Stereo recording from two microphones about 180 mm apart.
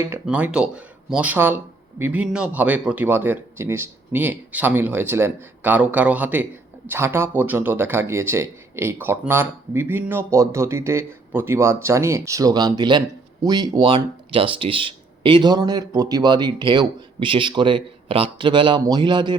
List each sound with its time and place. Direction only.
0.0 s speech: 10° right (ahead or behind); by 19.4 s 25° right (ahead or behind)